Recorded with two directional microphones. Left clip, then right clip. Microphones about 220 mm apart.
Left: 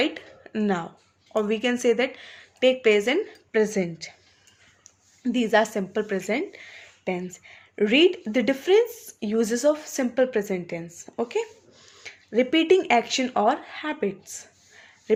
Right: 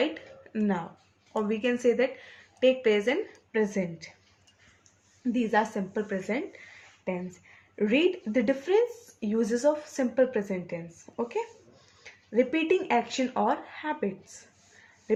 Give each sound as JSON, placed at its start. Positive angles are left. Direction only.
{"t": 0.0, "sound": "speech", "side_deg": 45}